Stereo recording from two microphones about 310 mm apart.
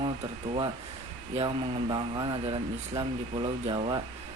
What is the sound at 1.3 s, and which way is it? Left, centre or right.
Speech, centre.